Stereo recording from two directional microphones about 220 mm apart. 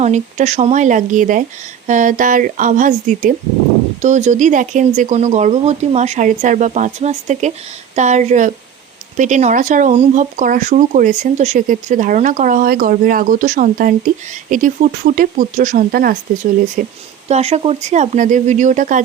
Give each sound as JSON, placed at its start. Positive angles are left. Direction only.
{"t": 0.0, "sound": "speech", "side_deg": -30}
{"t": 17.2, "sound": "speech", "side_deg": -30}